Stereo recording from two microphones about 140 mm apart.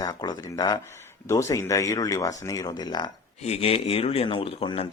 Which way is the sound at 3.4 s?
45° left (ahead or behind).